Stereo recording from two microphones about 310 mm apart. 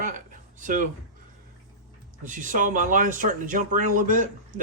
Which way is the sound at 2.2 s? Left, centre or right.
Right.